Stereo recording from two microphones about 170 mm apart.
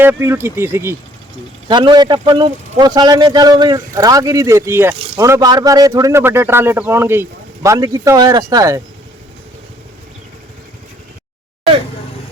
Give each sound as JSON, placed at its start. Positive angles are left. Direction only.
{"t": 0.0, "sound": "speech", "side_deg": -15}
{"t": 1.6, "sound": "speech", "side_deg": -25}